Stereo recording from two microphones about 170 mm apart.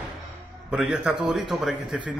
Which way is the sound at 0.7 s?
5° right (ahead or behind).